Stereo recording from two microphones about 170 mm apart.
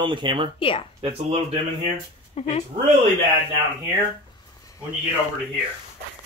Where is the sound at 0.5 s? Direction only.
30° left (ahead or behind).